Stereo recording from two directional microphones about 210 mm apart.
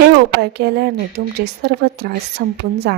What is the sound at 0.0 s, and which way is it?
A woman's voice, 55° right (ahead or behind).